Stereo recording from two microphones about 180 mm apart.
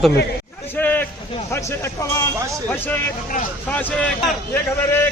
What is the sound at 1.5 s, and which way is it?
Speech, 15° left (ahead or behind).